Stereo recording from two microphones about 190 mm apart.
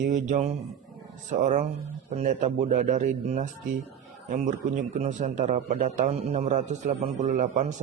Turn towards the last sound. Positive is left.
turn(degrees=-40)  # may be behind; listen again after turning